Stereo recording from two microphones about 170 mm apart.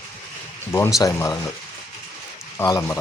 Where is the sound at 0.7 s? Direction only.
20° left (ahead or behind).